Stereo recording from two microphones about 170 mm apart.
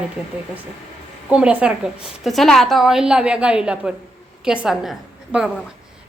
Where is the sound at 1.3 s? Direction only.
5° right (ahead or behind).